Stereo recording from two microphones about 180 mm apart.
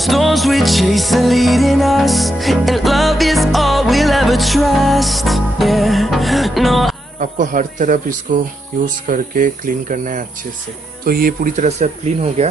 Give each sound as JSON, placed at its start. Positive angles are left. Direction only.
{"t": 0.0, "sound": "music", "side_deg": 0}
{"t": 7.2, "sound": "speech", "side_deg": -45}